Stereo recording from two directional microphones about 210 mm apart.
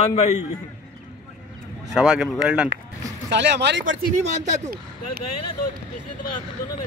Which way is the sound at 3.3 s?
55° right (ahead or behind).